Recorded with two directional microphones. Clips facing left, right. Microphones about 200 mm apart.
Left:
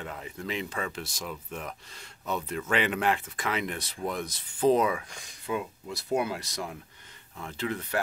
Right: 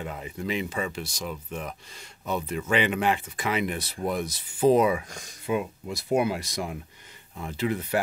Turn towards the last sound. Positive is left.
turn(degrees=-10)  # may be behind; listen again after turning